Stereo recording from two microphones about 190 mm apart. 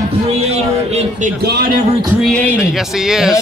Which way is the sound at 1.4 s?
55° right (ahead or behind).